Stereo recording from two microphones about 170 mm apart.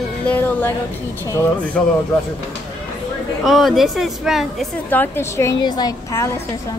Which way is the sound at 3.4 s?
Centre (ahead or behind).